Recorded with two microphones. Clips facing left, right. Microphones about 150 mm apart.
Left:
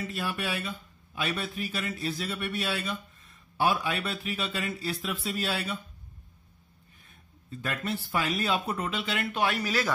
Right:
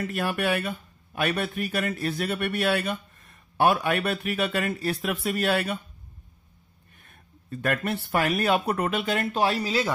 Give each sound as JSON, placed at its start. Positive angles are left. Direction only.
{"t": 0.0, "sound": "a man's voice", "side_deg": -60}
{"t": 7.1, "sound": "a man's voice", "side_deg": -60}